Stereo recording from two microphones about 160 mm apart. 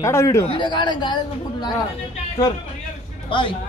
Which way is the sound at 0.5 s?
30° left (ahead or behind).